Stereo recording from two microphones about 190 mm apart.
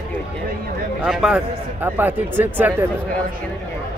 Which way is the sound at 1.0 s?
5° right (ahead or behind).